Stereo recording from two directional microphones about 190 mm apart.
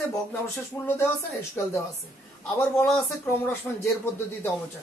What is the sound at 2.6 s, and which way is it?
Speech, 5° left (ahead or behind).